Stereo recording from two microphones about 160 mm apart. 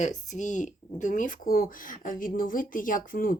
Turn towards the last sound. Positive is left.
turn(degrees=60)  # may be behind; listen again after turning